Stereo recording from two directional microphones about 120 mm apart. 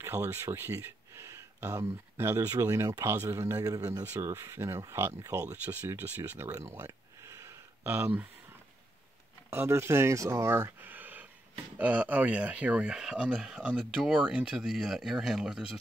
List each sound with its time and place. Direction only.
0.0 s a sound: 20° right (ahead or behind)
2.1 s a man's voice: 20° right (ahead or behind)
4.1 s a man's voice: 20° right (ahead or behind)
9.5 s speech: 20° right (ahead or behind); by 15.7 s 5° right (ahead or behind)